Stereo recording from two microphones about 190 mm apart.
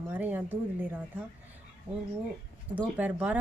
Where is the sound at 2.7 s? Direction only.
10° right (ahead or behind).